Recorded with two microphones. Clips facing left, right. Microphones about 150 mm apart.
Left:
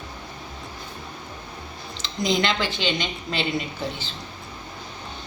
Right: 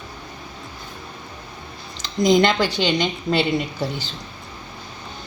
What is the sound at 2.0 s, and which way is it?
A woman's voice, 45° right (ahead or behind).